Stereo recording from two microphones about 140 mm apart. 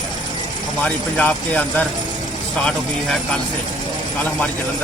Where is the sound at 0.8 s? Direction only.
10° left (ahead or behind).